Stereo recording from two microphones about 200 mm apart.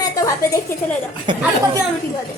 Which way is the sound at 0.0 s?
15° left (ahead or behind).